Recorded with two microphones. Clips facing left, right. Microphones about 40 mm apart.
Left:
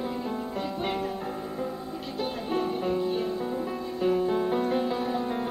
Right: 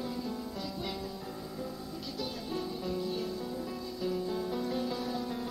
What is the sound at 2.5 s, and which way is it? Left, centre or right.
Music, left.